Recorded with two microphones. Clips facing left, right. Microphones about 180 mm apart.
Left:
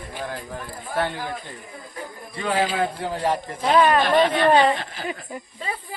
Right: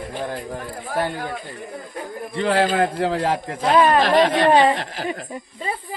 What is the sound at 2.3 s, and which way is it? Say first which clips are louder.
A man's voice: right 4 dB; 70° right (ahead or behind).